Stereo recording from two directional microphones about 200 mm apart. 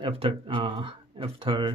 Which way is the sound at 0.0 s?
30° right (ahead or behind).